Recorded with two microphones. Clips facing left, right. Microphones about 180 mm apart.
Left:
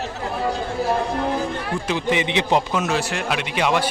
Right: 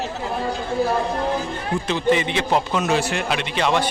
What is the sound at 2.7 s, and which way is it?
A man's voice, 5° left (ahead or behind).